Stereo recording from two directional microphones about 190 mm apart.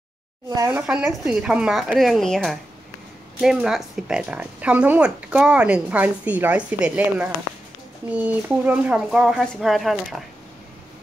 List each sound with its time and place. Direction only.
0.7 s speech: 5° right (ahead or behind)